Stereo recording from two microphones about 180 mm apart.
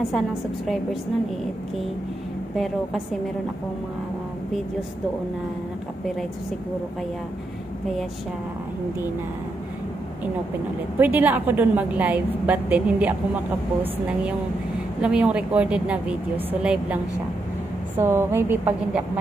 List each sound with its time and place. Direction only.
2.5 s a woman's voice: centre (ahead or behind)
11.0 s a woman's voice: 10° right (ahead or behind)
15.0 s a woman's voice: 5° right (ahead or behind)